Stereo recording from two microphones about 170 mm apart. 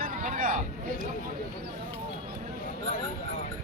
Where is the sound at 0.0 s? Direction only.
50° right (ahead or behind).